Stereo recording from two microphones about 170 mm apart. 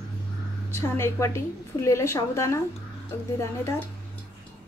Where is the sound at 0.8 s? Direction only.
15° left (ahead or behind).